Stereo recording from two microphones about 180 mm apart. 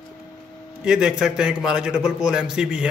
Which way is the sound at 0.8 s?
5° right (ahead or behind).